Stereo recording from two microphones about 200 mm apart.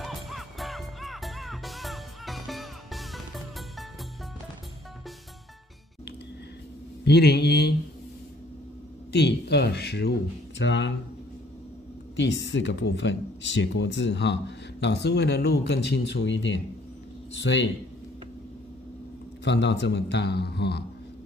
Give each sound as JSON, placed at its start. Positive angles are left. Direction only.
{"t": 0.0, "sound": "music", "side_deg": 0}
{"t": 7.1, "sound": "speech", "side_deg": 55}
{"t": 9.1, "sound": "speech", "side_deg": 55}
{"t": 12.2, "sound": "speech", "side_deg": 60}
{"t": 19.4, "sound": "speech", "side_deg": 60}